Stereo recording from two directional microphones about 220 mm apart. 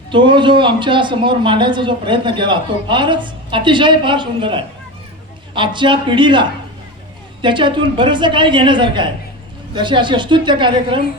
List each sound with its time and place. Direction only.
0.1 s a man's voice: 20° right (ahead or behind)